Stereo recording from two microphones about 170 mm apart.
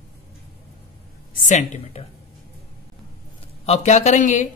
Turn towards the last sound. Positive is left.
turn(degrees=45)  # may be behind; listen again after turning